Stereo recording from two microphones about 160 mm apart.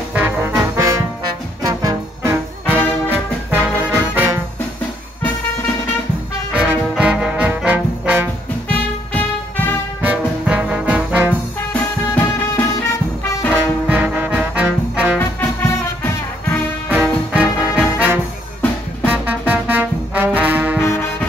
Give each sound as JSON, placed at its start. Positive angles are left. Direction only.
{"t": 0.1, "sound": "music", "side_deg": -10}
{"t": 6.5, "sound": "music", "side_deg": -5}
{"t": 10.0, "sound": "music", "side_deg": -10}
{"t": 11.7, "sound": "music", "side_deg": 15}
{"t": 13.8, "sound": "music", "side_deg": -10}
{"t": 15.1, "sound": "music", "side_deg": 15}
{"t": 16.9, "sound": "music", "side_deg": -5}
{"t": 19.0, "sound": "brass instrument", "side_deg": -10}